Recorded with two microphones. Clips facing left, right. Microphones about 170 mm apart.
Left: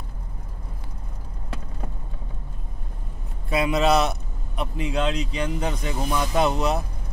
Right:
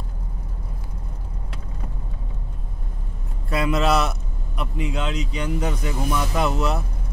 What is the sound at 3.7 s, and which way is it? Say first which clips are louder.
Speech: left 1 dB; centre (ahead or behind).